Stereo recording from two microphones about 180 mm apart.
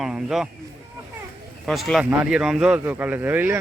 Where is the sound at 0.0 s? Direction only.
Centre (ahead or behind).